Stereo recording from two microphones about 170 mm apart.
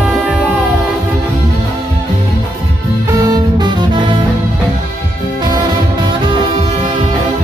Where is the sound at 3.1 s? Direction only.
25° right (ahead or behind).